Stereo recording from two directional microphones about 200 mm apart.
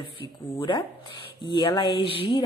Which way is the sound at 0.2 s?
25° left (ahead or behind).